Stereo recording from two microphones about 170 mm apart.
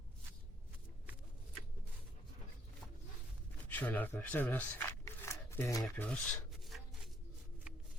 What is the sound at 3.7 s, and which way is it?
Speech, 10° left (ahead or behind).